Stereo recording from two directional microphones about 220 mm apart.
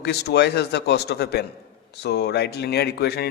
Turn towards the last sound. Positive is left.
turn(degrees=45)  # may be behind; listen again after turning